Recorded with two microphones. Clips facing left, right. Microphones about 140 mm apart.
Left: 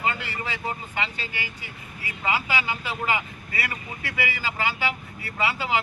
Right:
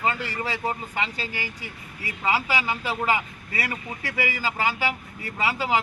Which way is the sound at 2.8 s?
40° right (ahead or behind).